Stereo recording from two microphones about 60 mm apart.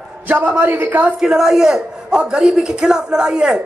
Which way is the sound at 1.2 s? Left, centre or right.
Centre.